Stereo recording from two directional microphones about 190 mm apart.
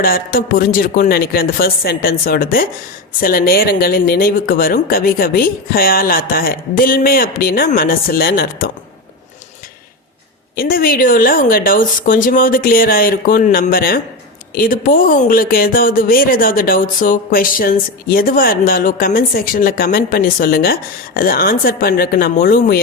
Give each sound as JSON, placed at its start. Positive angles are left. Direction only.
{"t": 0.0, "sound": "speech", "side_deg": 50}
{"t": 10.5, "sound": "speech", "side_deg": 50}